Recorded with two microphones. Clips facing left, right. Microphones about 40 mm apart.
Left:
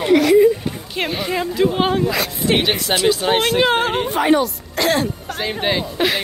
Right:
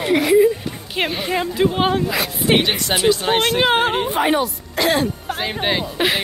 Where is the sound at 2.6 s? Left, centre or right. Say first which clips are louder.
Left 1 dB; centre.